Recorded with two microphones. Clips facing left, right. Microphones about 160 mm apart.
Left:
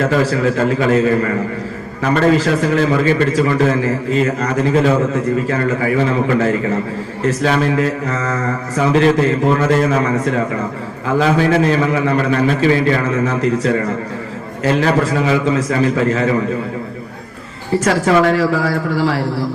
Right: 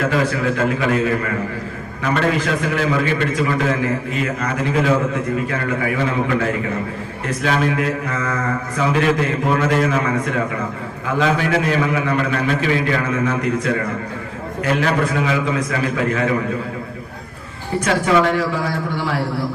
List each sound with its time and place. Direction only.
0.0 s a man's voice: 35° left (ahead or behind)